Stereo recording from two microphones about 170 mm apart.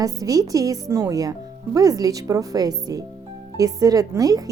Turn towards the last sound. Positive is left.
turn(degrees=-20)  # may be behind; listen again after turning